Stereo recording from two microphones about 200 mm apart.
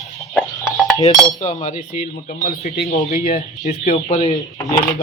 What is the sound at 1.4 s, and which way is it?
Speech, 35° left (ahead or behind).